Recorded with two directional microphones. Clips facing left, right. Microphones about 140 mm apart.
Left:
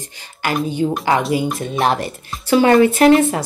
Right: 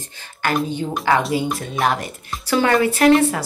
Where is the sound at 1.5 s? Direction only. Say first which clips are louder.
Left 3 dB; 25° left (ahead or behind).